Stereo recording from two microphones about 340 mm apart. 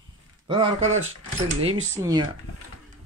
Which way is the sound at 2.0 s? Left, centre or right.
Centre.